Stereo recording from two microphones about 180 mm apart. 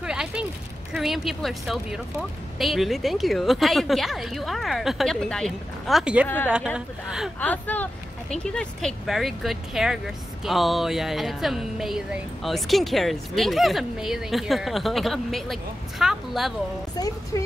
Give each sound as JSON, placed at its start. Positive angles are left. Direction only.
{"t": 0.0, "sound": "a sound", "side_deg": -5}
{"t": 0.9, "sound": "speech", "side_deg": 0}
{"t": 6.2, "sound": "a woman's voice", "side_deg": 10}
{"t": 17.0, "sound": "speech", "side_deg": 20}